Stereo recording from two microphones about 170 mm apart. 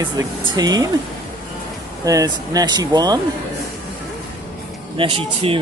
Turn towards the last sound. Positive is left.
turn(degrees=-30)  # may be behind; listen again after turning